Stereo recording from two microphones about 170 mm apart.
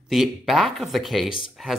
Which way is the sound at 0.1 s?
Centre (ahead or behind).